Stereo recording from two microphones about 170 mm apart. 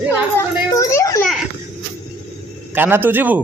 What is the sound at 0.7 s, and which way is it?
Speech, 20° left (ahead or behind).